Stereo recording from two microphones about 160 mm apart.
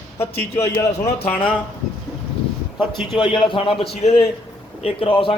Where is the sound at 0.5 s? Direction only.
20° left (ahead or behind).